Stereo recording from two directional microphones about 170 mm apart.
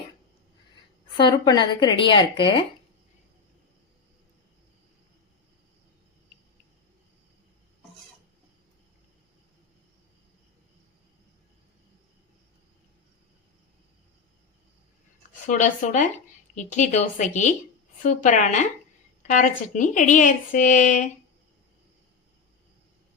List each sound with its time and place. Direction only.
1.1 s a woman's voice: 25° left (ahead or behind)
15.4 s speech: 45° left (ahead or behind)